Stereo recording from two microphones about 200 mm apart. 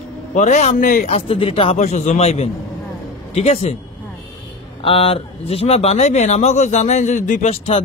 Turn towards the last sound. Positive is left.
turn(degrees=40)  # may be behind; listen again after turning